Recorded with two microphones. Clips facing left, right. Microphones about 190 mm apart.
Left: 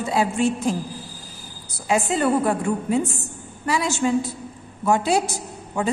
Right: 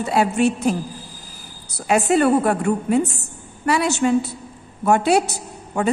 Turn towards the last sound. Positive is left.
turn(degrees=-65)  # may be behind; listen again after turning